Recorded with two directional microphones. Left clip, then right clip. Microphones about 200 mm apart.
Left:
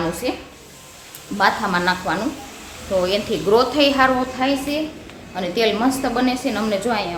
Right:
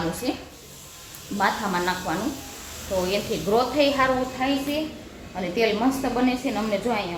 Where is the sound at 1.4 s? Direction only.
25° left (ahead or behind).